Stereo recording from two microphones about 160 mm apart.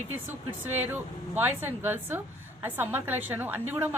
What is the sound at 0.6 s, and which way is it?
Speech, 10° right (ahead or behind).